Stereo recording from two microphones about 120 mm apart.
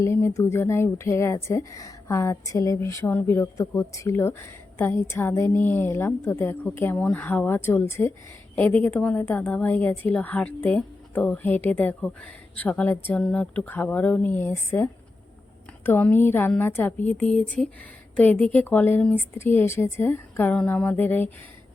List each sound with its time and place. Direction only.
0.0 s a woman's voice: 25° left (ahead or behind)